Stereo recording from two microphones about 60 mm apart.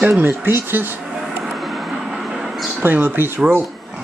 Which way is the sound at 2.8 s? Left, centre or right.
Right.